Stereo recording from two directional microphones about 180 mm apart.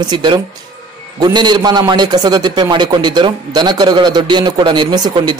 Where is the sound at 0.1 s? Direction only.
25° right (ahead or behind).